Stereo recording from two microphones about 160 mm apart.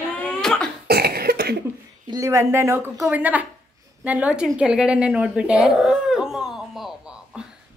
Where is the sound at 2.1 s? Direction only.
20° right (ahead or behind).